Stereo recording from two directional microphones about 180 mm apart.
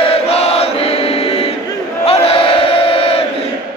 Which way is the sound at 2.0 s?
35° left (ahead or behind).